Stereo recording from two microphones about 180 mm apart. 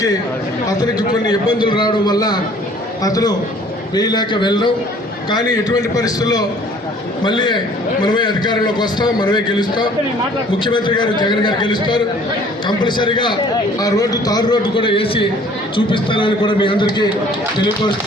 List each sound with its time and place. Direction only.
1.1 s a man's voice: 25° left (ahead or behind)